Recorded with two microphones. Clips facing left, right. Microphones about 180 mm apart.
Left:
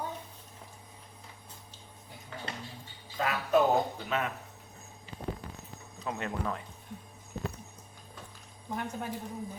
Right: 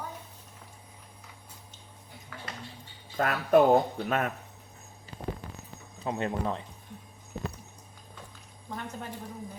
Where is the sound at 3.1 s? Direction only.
50° right (ahead or behind).